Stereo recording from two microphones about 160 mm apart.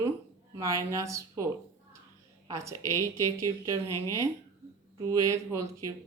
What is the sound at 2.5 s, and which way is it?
Speech, 20° right (ahead or behind).